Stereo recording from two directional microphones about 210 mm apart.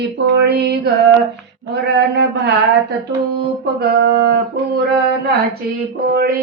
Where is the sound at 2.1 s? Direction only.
55° right (ahead or behind).